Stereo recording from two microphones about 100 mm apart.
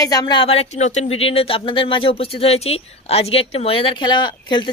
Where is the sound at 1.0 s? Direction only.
75° left (ahead or behind).